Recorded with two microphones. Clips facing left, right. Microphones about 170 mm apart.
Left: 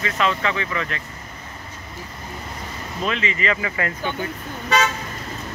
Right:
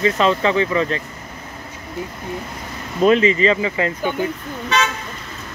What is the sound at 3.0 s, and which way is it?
Speech, 40° right (ahead or behind).